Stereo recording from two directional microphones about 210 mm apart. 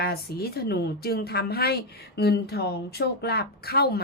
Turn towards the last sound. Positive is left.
turn(degrees=45)  # may be behind; listen again after turning